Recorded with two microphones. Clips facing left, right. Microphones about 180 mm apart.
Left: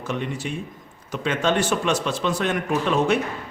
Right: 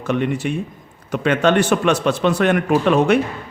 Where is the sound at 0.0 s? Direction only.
65° right (ahead or behind).